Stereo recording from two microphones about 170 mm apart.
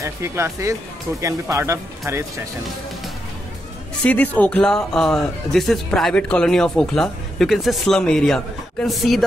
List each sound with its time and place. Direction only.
0.0 s speech: 15° right (ahead or behind)
4.0 s speech: 10° left (ahead or behind)